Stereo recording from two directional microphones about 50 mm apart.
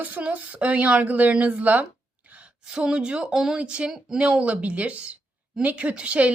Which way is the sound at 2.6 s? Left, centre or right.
Centre.